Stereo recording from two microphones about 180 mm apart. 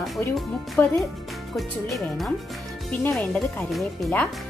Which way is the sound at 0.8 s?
10° left (ahead or behind).